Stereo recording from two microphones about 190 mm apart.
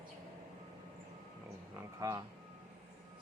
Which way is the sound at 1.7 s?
20° right (ahead or behind).